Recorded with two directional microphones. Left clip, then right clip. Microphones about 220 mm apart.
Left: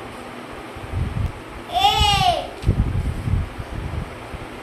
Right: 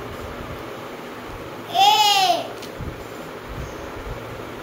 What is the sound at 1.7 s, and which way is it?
Babbling, 15° left (ahead or behind).